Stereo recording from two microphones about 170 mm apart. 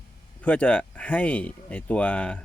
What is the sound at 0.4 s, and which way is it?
Speech, 5° left (ahead or behind).